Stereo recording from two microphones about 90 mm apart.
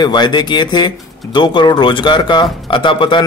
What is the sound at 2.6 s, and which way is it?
Speech, 70° left (ahead or behind).